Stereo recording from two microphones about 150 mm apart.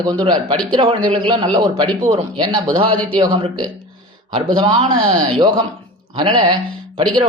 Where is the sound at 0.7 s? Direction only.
35° right (ahead or behind).